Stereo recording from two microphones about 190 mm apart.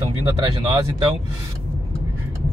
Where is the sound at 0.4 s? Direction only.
20° right (ahead or behind).